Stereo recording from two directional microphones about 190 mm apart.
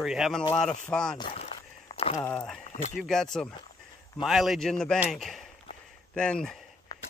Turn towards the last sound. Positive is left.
turn(degrees=20)  # may be behind; listen again after turning